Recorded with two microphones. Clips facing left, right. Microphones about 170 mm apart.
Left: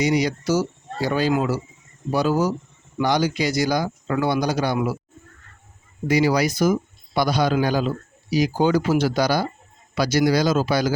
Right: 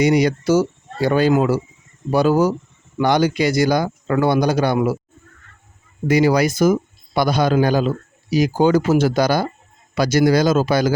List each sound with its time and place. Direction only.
0.0 s a man's voice: 55° right (ahead or behind)
6.1 s speech: 55° right (ahead or behind)